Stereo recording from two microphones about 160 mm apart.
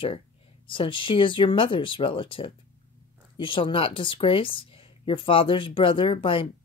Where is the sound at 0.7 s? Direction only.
30° left (ahead or behind).